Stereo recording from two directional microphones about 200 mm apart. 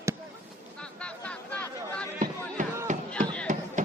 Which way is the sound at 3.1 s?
5° left (ahead or behind).